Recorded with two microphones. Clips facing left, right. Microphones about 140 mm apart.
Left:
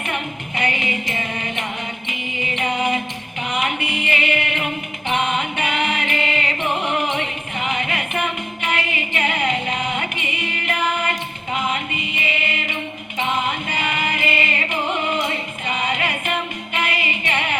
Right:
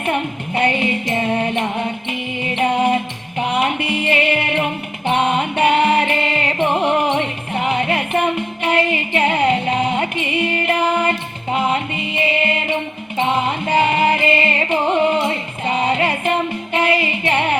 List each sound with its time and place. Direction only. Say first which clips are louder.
0.0 s music: right 6 dB; 30° right (ahead or behind)
3.4 s music: right 5 dB; 35° right (ahead or behind)